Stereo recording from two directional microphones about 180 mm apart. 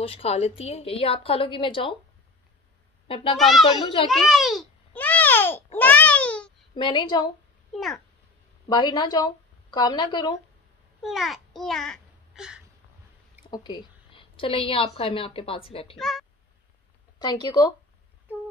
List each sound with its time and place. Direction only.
0.0 s a woman's voice: 35° left (ahead or behind)
3.3 s speech: centre (ahead or behind)
4.1 s babbling: centre (ahead or behind)
5.8 s baby cry: 10° left (ahead or behind)
6.7 s speech: 25° left (ahead or behind)
7.7 s speech: centre (ahead or behind)
8.6 s speech: 25° left (ahead or behind)
11.0 s a child's voice: centre (ahead or behind)
13.5 s a sound: 25° left (ahead or behind)
15.0 s a woman's voice: 30° left (ahead or behind)
16.0 s speech: centre (ahead or behind)
17.2 s speech: 25° left (ahead or behind)